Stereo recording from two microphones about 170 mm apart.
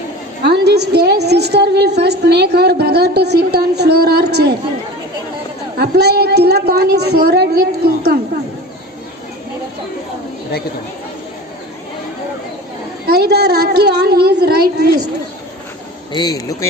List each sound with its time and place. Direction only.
0.4 s a woman's voice: 75° right (ahead or behind)
5.8 s a woman's voice: 70° right (ahead or behind)
13.1 s a woman's voice: 75° right (ahead or behind)
16.1 s speech: 20° left (ahead or behind)